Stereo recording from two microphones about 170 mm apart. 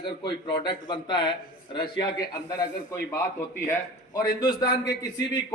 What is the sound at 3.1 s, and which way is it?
A man's voice, 15° left (ahead or behind).